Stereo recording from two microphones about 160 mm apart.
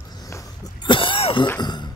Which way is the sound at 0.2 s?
20° left (ahead or behind).